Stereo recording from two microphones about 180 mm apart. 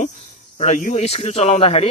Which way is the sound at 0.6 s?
40° left (ahead or behind).